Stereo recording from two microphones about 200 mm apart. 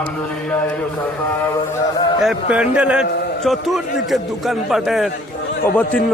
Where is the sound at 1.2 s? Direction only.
10° left (ahead or behind).